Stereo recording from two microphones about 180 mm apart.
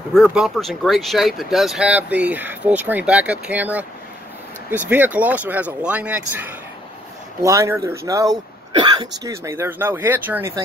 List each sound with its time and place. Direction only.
0.1 s speech: 5° right (ahead or behind)